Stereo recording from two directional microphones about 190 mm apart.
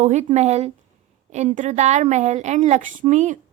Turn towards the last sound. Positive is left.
turn(degrees=-40)  # may be behind; listen again after turning